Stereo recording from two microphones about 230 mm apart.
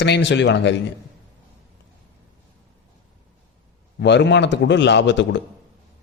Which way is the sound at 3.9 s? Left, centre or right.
Left.